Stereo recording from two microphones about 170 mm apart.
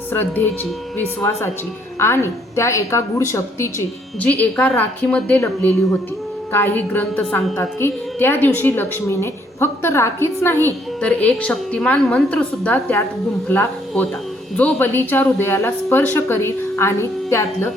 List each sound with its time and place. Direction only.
0.1 s a woman's voice: 10° left (ahead or behind)